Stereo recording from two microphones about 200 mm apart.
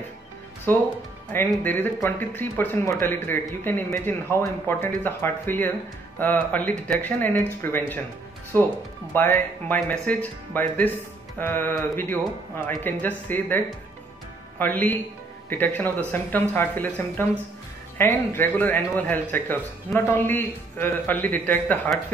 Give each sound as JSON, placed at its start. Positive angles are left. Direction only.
{"t": 0.7, "sound": "a man's voice", "side_deg": 10}